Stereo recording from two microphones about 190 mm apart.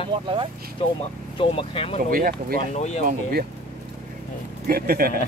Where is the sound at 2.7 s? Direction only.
35° left (ahead or behind).